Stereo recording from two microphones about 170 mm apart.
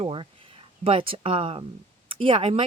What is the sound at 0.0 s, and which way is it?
Speech, 30° right (ahead or behind).